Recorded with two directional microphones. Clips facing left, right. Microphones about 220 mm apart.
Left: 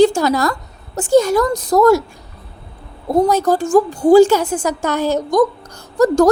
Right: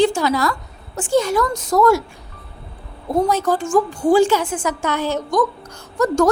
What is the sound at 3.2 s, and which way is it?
A woman's voice, 40° left (ahead or behind).